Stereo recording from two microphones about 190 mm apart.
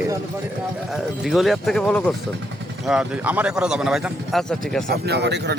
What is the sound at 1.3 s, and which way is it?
A man's voice, centre (ahead or behind).